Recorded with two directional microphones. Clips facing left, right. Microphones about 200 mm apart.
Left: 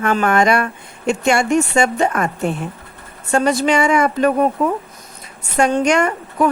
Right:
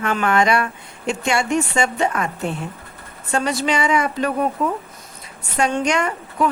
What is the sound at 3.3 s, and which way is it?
A woman's voice, 45° left (ahead or behind).